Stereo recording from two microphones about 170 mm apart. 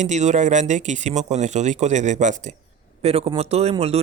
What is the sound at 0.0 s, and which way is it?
Speech, 45° right (ahead or behind).